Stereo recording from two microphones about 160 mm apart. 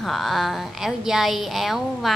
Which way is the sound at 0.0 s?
Centre (ahead or behind).